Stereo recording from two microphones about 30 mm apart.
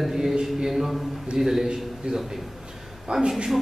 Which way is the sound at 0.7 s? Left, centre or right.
Centre.